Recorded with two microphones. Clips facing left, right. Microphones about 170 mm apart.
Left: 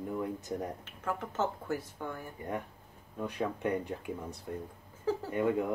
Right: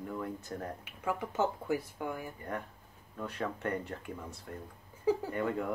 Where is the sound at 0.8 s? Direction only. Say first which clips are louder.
Right 1 dB; 10° right (ahead or behind).